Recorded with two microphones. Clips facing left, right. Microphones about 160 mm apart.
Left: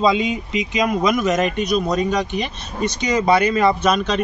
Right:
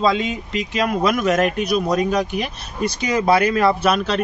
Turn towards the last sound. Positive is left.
turn(degrees=-5)  # may be behind; listen again after turning